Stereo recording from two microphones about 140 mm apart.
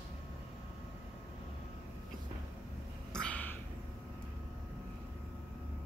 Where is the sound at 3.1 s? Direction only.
10° left (ahead or behind).